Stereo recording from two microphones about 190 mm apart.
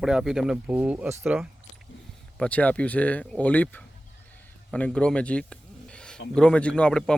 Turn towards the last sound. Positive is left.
turn(degrees=5)  # may be behind; listen again after turning